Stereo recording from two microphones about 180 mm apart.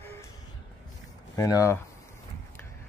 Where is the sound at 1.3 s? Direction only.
20° left (ahead or behind).